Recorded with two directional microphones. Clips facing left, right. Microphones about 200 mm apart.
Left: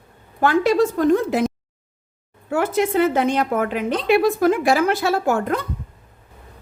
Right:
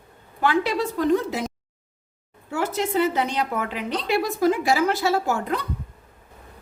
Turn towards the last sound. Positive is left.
turn(degrees=50)  # may be behind; listen again after turning